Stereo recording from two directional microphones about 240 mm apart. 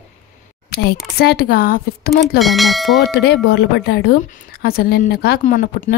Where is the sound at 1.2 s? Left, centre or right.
Left.